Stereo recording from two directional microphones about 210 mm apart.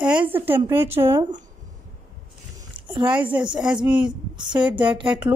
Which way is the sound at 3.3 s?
10° right (ahead or behind).